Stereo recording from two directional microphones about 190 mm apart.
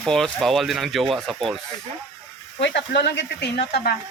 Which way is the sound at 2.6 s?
65° left (ahead or behind).